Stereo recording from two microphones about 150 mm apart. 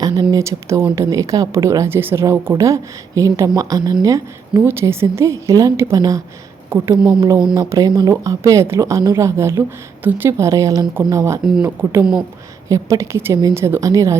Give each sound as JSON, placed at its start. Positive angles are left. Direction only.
{"t": 0.2, "sound": "a woman's voice", "side_deg": -25}
{"t": 6.9, "sound": "speech", "side_deg": -5}
{"t": 7.2, "sound": "a woman's voice", "side_deg": -20}